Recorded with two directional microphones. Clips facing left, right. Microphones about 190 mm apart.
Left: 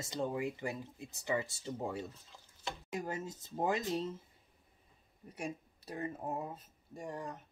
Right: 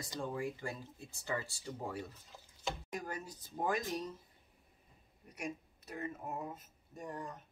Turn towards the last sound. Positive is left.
turn(degrees=30)  # may be behind; listen again after turning